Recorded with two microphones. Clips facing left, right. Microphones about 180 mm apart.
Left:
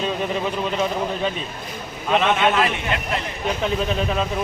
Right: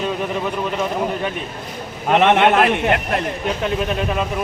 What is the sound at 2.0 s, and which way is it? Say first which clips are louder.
A man's voice: right 5 dB; 70° right (ahead or behind).